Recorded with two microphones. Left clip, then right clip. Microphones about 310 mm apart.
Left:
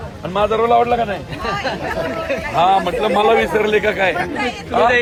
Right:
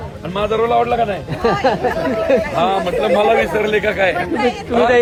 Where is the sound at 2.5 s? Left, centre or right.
Centre.